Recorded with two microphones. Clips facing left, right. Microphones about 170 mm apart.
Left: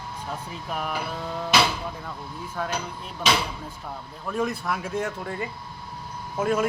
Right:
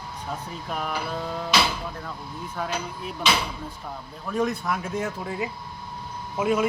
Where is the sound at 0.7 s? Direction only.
5° left (ahead or behind).